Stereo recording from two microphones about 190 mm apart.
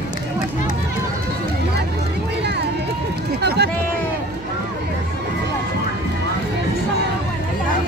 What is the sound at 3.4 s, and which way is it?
Run, 60° right (ahead or behind).